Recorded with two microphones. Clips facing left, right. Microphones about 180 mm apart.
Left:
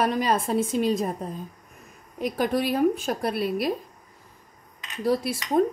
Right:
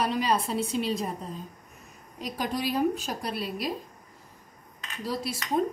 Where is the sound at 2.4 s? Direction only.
55° left (ahead or behind).